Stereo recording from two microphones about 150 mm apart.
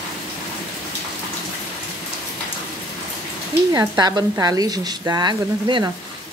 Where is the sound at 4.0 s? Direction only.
25° right (ahead or behind).